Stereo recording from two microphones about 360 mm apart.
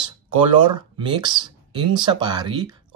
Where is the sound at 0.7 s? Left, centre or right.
Centre.